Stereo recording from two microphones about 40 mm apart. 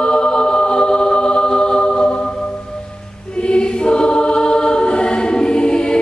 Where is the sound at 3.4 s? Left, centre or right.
Left.